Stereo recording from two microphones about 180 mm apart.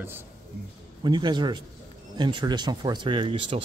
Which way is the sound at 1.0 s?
25° right (ahead or behind).